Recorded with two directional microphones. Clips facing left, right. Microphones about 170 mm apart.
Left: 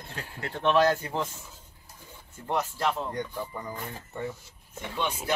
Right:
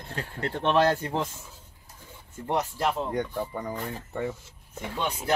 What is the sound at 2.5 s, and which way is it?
Speech, 15° right (ahead or behind).